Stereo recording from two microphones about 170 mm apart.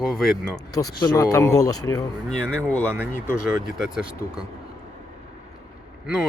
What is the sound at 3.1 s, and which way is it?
Speech, 15° left (ahead or behind).